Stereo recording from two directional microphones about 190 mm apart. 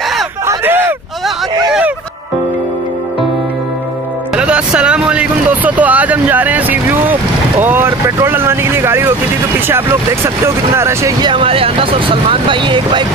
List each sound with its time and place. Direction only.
0.5 s a sound: 10° right (ahead or behind)
4.4 s vehicle: 5° right (ahead or behind)
9.7 s speech: 10° right (ahead or behind)